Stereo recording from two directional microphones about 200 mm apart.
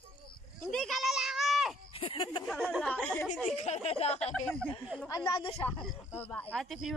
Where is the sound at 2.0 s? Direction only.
25° left (ahead or behind).